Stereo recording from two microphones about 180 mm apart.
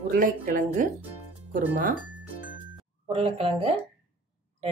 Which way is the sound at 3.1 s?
30° right (ahead or behind).